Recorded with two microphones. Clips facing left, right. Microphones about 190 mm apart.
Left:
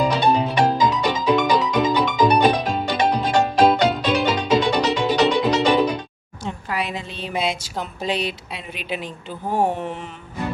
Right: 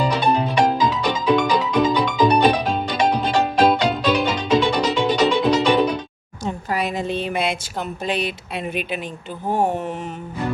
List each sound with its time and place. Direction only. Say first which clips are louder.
0.0 s music: left 1 dB; centre (ahead or behind)
6.4 s a sound: right 3 dB; 45° right (ahead or behind)
8.0 s speech: left 1 dB; 50° right (ahead or behind)